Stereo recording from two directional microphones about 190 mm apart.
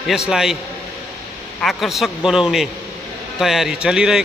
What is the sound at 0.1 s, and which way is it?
Speech, centre (ahead or behind).